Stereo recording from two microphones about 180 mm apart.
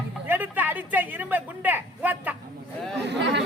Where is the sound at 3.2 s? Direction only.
80° right.